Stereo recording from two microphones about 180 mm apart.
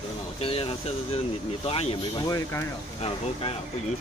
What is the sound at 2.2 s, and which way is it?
Speech, 15° left (ahead or behind).